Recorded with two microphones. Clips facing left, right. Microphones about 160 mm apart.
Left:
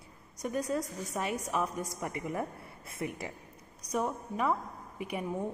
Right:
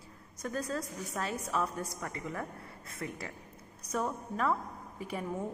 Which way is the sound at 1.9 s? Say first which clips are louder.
Left 3 dB; 25° left (ahead or behind).